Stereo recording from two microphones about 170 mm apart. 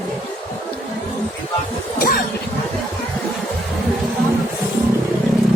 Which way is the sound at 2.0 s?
60° left (ahead or behind).